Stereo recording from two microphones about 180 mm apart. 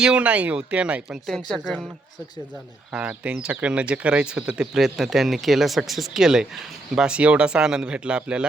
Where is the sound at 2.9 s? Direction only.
5° right (ahead or behind).